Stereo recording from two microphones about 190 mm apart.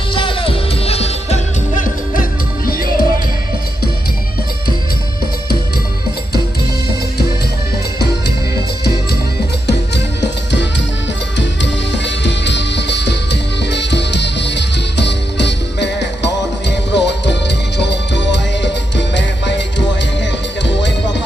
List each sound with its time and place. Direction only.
0.1 s music: 25° left (ahead or behind); by 3.1 s 50° left (ahead or behind)
9.6 s music: 65° left (ahead or behind)